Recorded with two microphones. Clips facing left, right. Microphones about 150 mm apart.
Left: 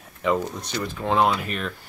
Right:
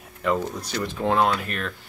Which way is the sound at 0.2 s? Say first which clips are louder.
Left 1 dB; centre (ahead or behind).